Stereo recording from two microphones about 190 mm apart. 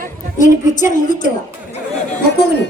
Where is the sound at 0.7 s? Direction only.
40° left (ahead or behind).